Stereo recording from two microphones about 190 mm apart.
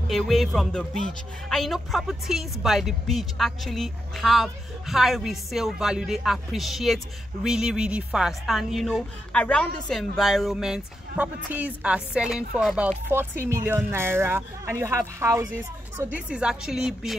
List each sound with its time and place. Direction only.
0.1 s speech: centre (ahead or behind)